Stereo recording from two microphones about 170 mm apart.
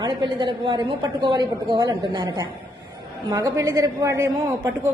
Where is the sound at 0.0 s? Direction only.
30° right (ahead or behind).